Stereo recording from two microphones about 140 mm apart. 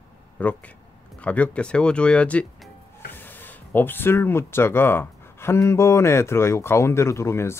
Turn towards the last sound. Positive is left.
turn(degrees=20)  # may be behind; listen again after turning